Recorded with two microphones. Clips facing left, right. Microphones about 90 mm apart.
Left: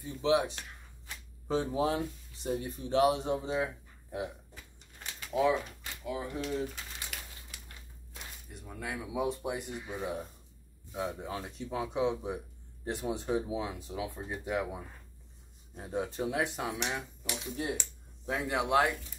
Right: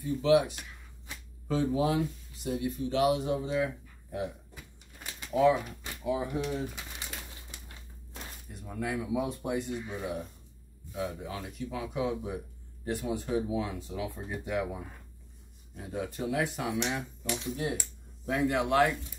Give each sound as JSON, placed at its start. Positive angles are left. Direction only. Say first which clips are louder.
{"t": 0.0, "sound": "speech", "louder": "right 4 dB", "side_deg": 25}
{"t": 5.3, "sound": "speech", "louder": "right 4 dB", "side_deg": 0}
{"t": 6.0, "sound": "pigeon", "louder": "right 5 dB", "side_deg": -10}
{"t": 8.5, "sound": "speech", "louder": "right 5 dB", "side_deg": 0}
{"t": 15.7, "sound": "speech", "louder": "left 1 dB", "side_deg": 25}
{"t": 16.7, "sound": "speech", "louder": "right 4 dB", "side_deg": 5}